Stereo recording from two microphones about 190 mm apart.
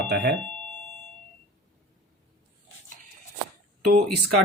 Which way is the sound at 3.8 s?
55° right (ahead or behind).